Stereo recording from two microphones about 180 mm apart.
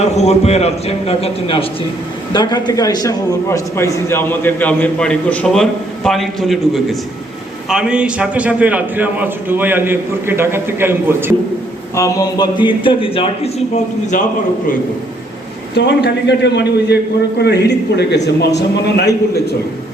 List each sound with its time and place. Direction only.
0.0 s a man's voice: 40° left (ahead or behind); by 6.6 s centre (ahead or behind)
7.7 s a man's voice: 5° right (ahead or behind)
11.9 s a man's voice: 20° left (ahead or behind); by 14.3 s 40° left (ahead or behind)
15.7 s a man's voice: 65° left (ahead or behind)